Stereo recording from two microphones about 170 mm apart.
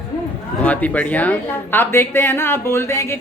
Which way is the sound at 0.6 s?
10° left (ahead or behind).